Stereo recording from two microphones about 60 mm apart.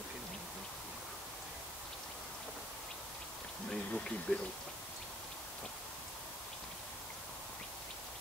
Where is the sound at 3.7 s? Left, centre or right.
Centre.